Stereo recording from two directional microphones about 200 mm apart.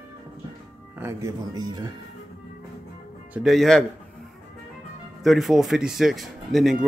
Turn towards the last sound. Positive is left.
turn(degrees=0)  # may be behind; listen again after turning